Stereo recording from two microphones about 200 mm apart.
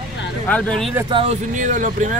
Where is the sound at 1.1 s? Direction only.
35° right (ahead or behind).